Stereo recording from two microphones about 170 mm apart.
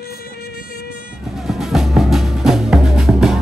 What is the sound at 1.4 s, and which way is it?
Music, centre (ahead or behind).